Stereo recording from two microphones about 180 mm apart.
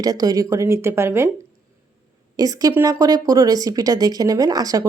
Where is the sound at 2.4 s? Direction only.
20° right (ahead or behind).